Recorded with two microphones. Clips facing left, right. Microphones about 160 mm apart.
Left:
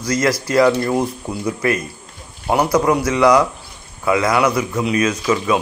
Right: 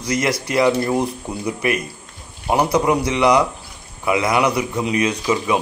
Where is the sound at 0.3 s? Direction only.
20° right (ahead or behind).